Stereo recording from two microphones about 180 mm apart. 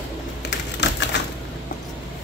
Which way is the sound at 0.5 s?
75° left (ahead or behind).